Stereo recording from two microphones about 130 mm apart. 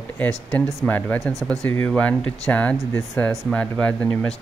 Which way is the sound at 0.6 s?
10° left (ahead or behind).